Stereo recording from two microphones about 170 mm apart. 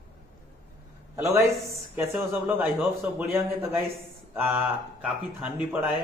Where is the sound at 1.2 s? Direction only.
15° right (ahead or behind).